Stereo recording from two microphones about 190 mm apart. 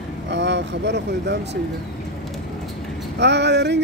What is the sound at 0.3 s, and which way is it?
Speech, 65° right (ahead or behind).